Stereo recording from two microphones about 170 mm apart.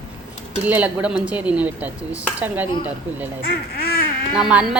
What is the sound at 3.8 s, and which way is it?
Duck, 60° left (ahead or behind).